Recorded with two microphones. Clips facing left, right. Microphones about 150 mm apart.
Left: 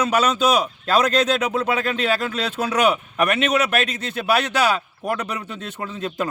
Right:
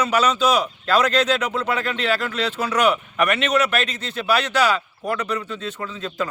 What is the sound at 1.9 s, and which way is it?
A man's voice, 45° left (ahead or behind).